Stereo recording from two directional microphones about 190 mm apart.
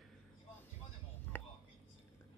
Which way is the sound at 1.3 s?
10° left (ahead or behind).